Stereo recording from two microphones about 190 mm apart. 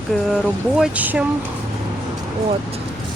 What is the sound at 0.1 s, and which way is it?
Speech, centre (ahead or behind).